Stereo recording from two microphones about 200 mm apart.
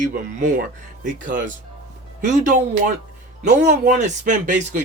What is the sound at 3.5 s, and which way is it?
Speech, 40° right (ahead or behind).